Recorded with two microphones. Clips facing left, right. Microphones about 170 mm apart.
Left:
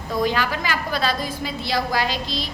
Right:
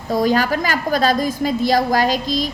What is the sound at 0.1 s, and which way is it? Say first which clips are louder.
A woman's voice: right 6 dB; 40° right (ahead or behind).